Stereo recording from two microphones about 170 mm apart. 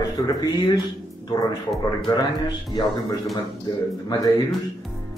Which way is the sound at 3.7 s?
25° left (ahead or behind).